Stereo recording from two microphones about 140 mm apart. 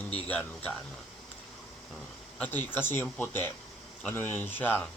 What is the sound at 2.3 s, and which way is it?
Speech, 10° left (ahead or behind).